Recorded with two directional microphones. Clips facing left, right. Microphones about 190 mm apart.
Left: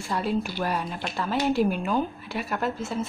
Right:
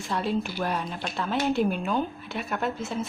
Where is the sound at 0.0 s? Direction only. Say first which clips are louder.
Left 1 dB; 5° left (ahead or behind).